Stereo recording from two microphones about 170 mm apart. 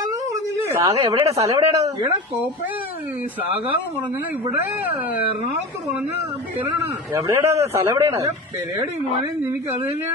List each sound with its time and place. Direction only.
0.3 s a sound: 20° right (ahead or behind)
1.2 s speech: 35° right (ahead or behind)
1.5 s speech: 20° right (ahead or behind)
4.6 s a man's voice: 10° right (ahead or behind)
7.2 s a man's voice: 20° right (ahead or behind)